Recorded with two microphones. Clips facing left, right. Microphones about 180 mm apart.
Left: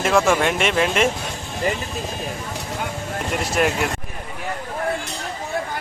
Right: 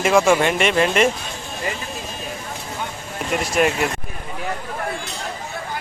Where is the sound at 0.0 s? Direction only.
Centre (ahead or behind).